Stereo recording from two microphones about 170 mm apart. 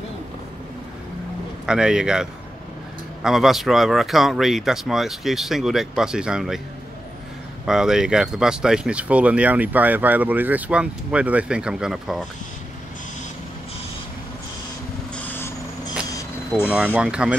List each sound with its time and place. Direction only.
1.7 s speech: 5° right (ahead or behind)
7.6 s speech: 5° right (ahead or behind)
15.1 s vehicle: 10° left (ahead or behind)
16.6 s speech: 10° right (ahead or behind)